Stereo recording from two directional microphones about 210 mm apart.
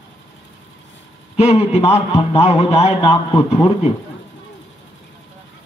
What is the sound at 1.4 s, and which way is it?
A man's voice, 30° left (ahead or behind).